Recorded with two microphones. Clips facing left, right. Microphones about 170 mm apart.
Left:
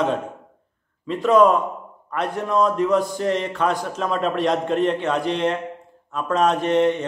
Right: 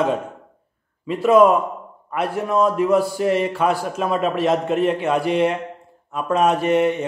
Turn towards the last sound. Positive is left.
turn(degrees=-10)  # may be behind; listen again after turning